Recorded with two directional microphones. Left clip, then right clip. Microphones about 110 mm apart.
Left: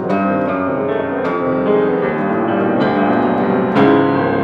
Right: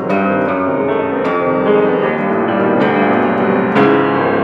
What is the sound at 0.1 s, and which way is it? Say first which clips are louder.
Music: right 3 dB; 40° right (ahead or behind).